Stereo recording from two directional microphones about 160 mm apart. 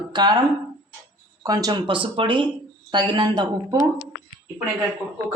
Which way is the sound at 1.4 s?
25° right (ahead or behind).